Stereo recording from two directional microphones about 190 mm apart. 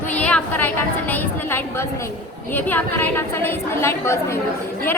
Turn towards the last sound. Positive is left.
turn(degrees=15)  # may be behind; listen again after turning